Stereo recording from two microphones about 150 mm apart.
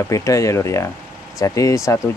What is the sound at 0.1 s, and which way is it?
Speech, 20° left (ahead or behind).